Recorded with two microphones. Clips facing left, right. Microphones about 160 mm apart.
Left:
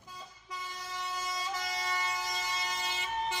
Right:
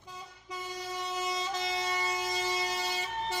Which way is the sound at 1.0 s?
25° right (ahead or behind).